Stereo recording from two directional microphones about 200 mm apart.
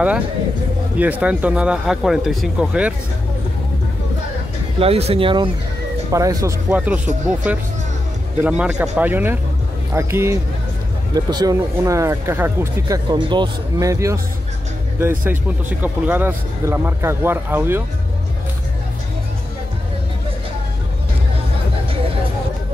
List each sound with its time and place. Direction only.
0.9 s speech: 5° right (ahead or behind)
4.7 s speech: 30° right (ahead or behind); by 7.0 s 10° right (ahead or behind)
8.5 s speech: 5° right (ahead or behind)